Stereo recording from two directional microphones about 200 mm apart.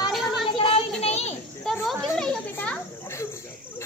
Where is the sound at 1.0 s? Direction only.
30° left (ahead or behind).